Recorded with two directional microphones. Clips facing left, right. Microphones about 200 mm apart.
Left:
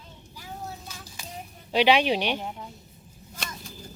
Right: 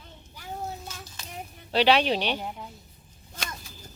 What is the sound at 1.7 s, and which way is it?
Speech, 10° left (ahead or behind).